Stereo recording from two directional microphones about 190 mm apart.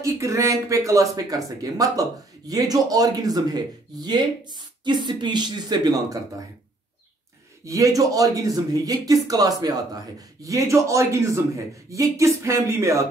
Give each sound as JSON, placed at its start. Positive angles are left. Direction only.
{"t": 0.0, "sound": "speech", "side_deg": -15}
{"t": 7.6, "sound": "speech", "side_deg": -15}